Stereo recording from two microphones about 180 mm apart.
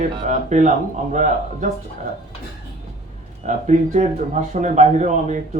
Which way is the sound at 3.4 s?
40° right (ahead or behind).